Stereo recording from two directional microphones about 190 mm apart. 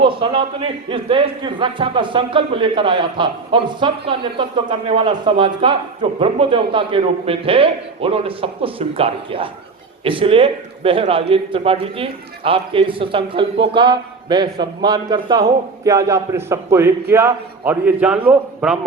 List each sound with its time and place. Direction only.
0.0 s a man's voice: 30° right (ahead or behind); by 18.8 s 5° right (ahead or behind)